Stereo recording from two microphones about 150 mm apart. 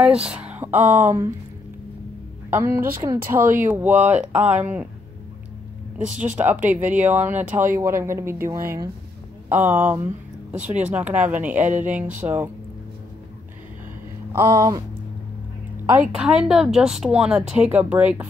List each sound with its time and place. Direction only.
0.0 s speech: 5° right (ahead or behind)
2.5 s speech: 15° right (ahead or behind)
6.1 s speech: 10° right (ahead or behind)
14.3 s a sound: 20° right (ahead or behind)
16.1 s a woman's voice: 5° right (ahead or behind)